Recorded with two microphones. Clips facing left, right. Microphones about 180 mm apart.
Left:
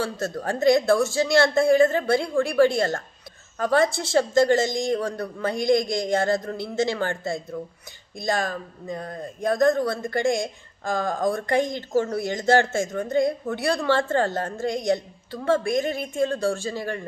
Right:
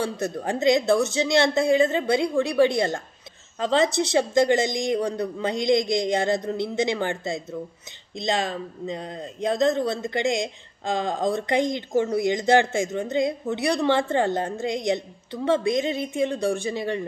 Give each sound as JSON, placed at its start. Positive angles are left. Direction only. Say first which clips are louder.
{"t": 0.0, "sound": "a man's voice", "louder": "right 1 dB", "side_deg": -20}